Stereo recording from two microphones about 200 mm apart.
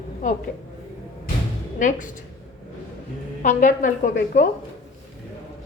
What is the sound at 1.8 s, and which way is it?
Speech, 40° left (ahead or behind).